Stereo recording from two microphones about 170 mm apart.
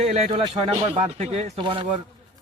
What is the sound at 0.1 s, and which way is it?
Speech, 35° right (ahead or behind).